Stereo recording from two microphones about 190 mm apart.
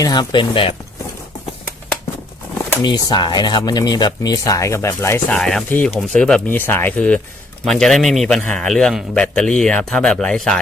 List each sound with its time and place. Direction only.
0.0 s speech: 20° left (ahead or behind)
2.6 s a man's voice: 20° left (ahead or behind); by 10.6 s 5° left (ahead or behind)